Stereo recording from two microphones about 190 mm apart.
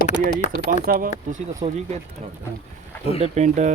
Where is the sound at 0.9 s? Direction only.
45° right (ahead or behind).